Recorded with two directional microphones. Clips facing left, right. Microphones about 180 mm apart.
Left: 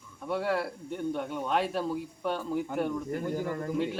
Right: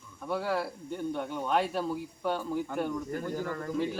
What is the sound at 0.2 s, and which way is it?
Speech, centre (ahead or behind).